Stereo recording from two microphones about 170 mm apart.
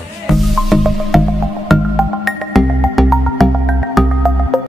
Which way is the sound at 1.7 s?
Centre (ahead or behind).